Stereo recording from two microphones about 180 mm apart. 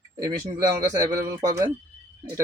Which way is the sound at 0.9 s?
20° right (ahead or behind).